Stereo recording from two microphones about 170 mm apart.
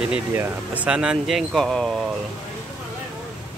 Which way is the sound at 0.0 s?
5° right (ahead or behind).